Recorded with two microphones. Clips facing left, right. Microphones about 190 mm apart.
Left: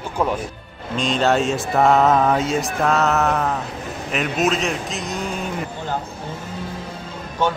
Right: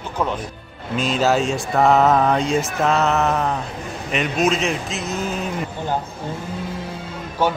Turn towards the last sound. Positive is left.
turn(degrees=-10)  # may be behind; listen again after turning